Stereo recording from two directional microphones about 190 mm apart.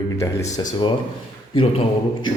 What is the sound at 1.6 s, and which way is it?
Speech, 25° left (ahead or behind).